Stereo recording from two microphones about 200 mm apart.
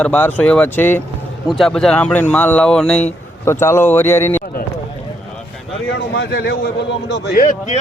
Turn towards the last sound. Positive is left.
turn(degrees=60)  # may be behind; listen again after turning